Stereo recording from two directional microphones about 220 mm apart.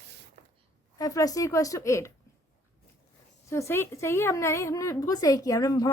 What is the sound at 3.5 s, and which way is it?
A woman's voice, 10° left (ahead or behind).